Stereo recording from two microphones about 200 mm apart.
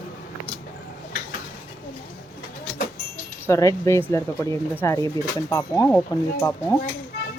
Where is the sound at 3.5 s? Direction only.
15° left (ahead or behind).